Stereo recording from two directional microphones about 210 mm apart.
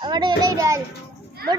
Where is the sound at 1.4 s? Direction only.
45° right (ahead or behind).